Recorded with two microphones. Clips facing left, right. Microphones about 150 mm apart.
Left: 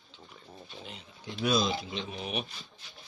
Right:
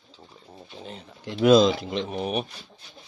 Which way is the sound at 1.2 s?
90° right.